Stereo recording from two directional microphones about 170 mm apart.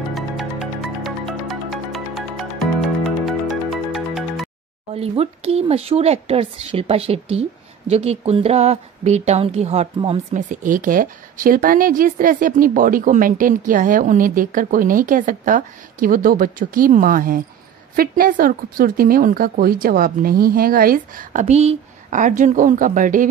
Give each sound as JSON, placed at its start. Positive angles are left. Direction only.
{"t": 0.1, "sound": "music", "side_deg": 0}
{"t": 4.9, "sound": "speech", "side_deg": -35}
{"t": 10.3, "sound": "a woman's voice", "side_deg": -50}